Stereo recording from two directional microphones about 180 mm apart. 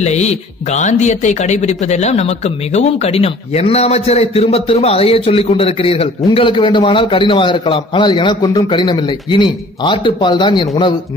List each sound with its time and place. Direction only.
0.0 s a man's voice: 40° left (ahead or behind)